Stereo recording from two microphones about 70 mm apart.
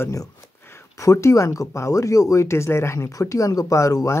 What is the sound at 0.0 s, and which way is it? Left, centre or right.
Speech, left.